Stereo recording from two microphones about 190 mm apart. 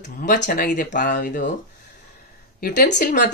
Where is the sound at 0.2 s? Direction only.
45° left (ahead or behind).